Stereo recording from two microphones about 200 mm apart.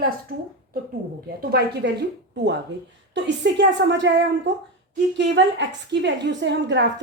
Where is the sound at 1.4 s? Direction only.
50° right (ahead or behind).